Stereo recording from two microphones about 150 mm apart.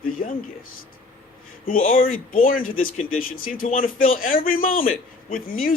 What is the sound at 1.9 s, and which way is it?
A man's voice, 70° left (ahead or behind).